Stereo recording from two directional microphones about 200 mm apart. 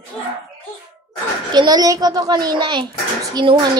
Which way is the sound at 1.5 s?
20° right (ahead or behind).